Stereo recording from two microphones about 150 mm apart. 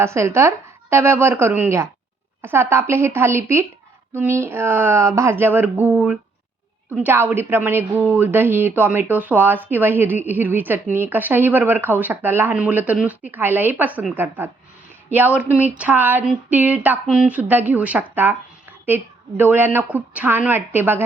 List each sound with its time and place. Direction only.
0.0 s a woman's voice: 15° right (ahead or behind)